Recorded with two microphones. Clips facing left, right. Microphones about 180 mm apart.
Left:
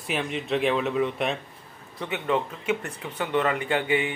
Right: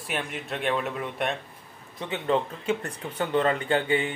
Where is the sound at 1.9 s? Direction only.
30° right (ahead or behind).